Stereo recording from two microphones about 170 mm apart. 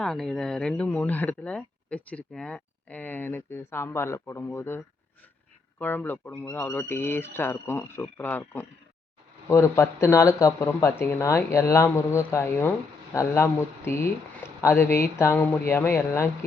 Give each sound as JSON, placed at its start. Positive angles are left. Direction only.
{"t": 0.0, "sound": "speech", "side_deg": 5}
{"t": 5.8, "sound": "speech", "side_deg": 10}